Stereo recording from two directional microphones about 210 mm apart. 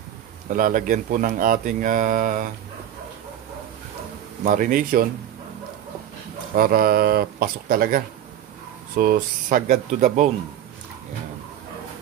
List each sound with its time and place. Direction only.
0.5 s speech: 40° right (ahead or behind)
4.5 s speech: 40° right (ahead or behind)
6.5 s speech: 45° right (ahead or behind)